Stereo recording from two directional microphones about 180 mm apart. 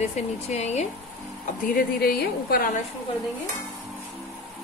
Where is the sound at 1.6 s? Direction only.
55° left (ahead or behind).